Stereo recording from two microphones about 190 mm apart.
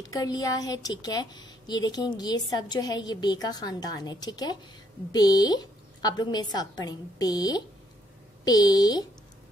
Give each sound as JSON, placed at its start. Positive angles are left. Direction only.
{"t": 0.0, "sound": "a woman's voice", "side_deg": 20}